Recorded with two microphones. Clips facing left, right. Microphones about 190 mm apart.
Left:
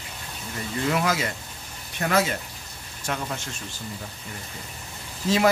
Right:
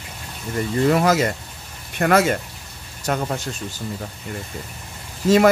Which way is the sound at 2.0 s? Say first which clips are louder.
Right 6 dB; 60° right (ahead or behind).